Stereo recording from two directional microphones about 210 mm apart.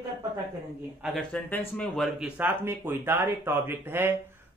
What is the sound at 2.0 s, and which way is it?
Speech, 5° right (ahead or behind).